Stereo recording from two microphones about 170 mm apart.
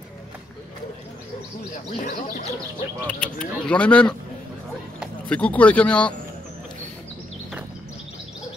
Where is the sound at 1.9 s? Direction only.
50° left (ahead or behind).